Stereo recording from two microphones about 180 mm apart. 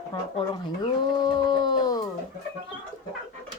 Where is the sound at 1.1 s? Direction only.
20° left (ahead or behind).